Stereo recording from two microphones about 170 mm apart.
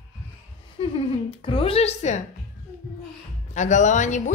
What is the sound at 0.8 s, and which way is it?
A woman's voice, 35° left (ahead or behind).